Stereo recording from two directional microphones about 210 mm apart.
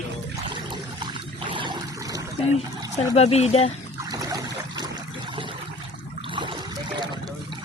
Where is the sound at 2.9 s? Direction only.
30° left (ahead or behind).